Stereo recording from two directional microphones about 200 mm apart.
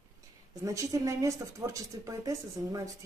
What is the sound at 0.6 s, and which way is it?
Speech, 15° right (ahead or behind).